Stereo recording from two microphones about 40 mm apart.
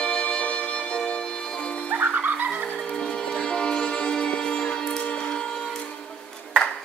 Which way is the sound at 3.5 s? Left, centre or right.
Left.